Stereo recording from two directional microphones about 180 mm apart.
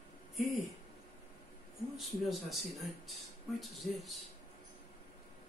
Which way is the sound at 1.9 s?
Centre (ahead or behind).